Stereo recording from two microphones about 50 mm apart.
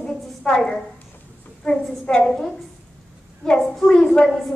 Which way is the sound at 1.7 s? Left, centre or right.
Left.